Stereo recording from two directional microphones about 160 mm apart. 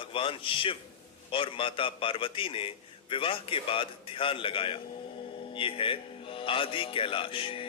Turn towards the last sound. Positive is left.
turn(degrees=35)  # may be behind; listen again after turning